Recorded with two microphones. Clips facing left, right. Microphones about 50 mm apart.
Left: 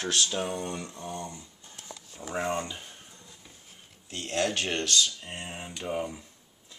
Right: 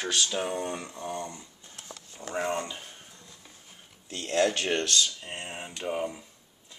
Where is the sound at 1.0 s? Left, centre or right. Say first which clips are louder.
Right 4 dB; right.